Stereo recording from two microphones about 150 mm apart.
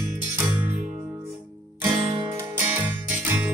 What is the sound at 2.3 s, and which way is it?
Music, 15° right (ahead or behind).